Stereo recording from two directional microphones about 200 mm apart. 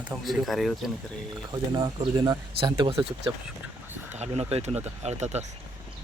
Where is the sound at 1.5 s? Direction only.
20° right (ahead or behind).